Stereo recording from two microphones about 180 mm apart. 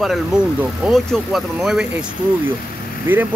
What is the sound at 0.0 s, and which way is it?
Speech, centre (ahead or behind).